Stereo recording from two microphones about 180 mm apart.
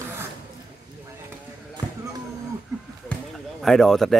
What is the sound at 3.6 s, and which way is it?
Speech, centre (ahead or behind).